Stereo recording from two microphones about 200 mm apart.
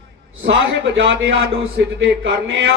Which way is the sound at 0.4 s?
65° right (ahead or behind).